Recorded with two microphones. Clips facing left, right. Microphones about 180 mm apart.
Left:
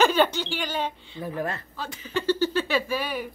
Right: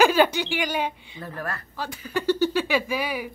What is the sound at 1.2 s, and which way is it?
Speech, 15° left (ahead or behind).